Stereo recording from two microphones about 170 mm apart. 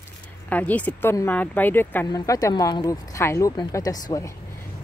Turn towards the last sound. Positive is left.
turn(degrees=20)  # may be behind; listen again after turning